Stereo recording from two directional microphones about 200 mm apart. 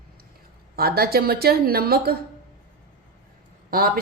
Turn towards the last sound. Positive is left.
turn(degrees=-45)  # may be behind; listen again after turning